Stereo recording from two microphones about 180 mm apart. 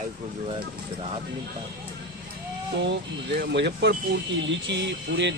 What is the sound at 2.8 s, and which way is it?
Speech, 75° right (ahead or behind).